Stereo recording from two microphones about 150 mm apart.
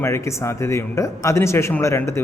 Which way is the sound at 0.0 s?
20° left (ahead or behind).